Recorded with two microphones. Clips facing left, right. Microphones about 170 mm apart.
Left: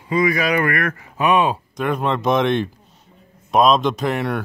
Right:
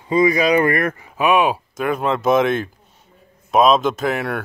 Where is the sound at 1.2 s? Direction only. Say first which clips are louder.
Right 1 dB; 10° right (ahead or behind).